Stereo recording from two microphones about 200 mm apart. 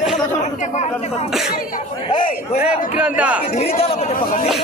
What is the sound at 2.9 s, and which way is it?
Speech, 5° right (ahead or behind).